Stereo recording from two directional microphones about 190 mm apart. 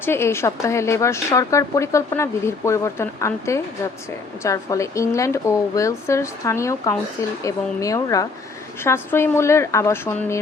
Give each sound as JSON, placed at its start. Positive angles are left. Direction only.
{"t": 0.0, "sound": "a woman's voice", "side_deg": 15}